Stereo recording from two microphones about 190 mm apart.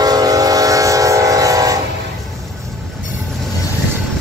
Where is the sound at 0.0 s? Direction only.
20° right (ahead or behind).